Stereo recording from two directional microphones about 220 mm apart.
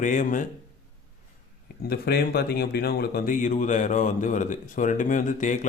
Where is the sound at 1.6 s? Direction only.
45° left (ahead or behind).